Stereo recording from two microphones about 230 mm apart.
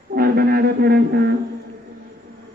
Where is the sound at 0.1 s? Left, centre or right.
Right.